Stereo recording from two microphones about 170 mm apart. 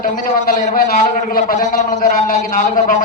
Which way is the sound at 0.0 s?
50° left (ahead or behind).